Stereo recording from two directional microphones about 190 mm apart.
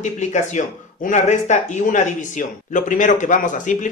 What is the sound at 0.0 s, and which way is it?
Speech, 40° left (ahead or behind).